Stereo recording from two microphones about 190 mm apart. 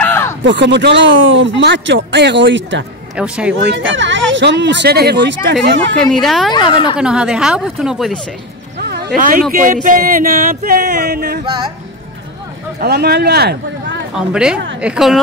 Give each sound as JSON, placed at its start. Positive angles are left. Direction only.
{"t": 0.0, "sound": "a sound", "side_deg": 10}
{"t": 0.4, "sound": "speech", "side_deg": -70}
{"t": 3.2, "sound": "speech", "side_deg": -5}
{"t": 3.6, "sound": "speech", "side_deg": -70}
{"t": 6.2, "sound": "speech", "side_deg": 0}
{"t": 8.9, "sound": "speech", "side_deg": -55}
{"t": 9.5, "sound": "music", "side_deg": -45}
{"t": 11.4, "sound": "speech", "side_deg": -25}
{"t": 12.8, "sound": "speech", "side_deg": -60}
{"t": 14.1, "sound": "speech", "side_deg": -5}